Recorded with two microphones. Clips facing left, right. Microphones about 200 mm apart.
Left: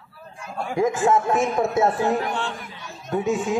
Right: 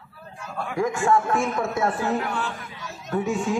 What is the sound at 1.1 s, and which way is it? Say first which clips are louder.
A man's voice: left 1 dB; 20° left (ahead or behind).